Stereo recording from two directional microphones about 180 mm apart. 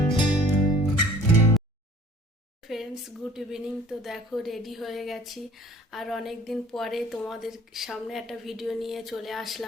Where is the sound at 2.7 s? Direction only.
Centre (ahead or behind).